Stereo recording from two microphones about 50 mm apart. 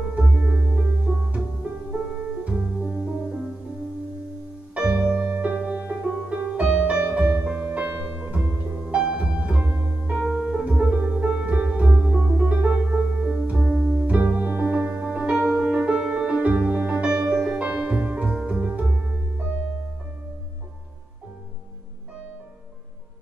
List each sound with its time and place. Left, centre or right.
0.2 s music: centre
4.7 s music: right
5.2 s music: right
12.6 s music: centre
14.0 s music: right
15.3 s music: centre
15.7 s music: right
16.5 s music: right
17.2 s music: centre; by 18.3 s right
18.3 s music: right
18.9 s music: centre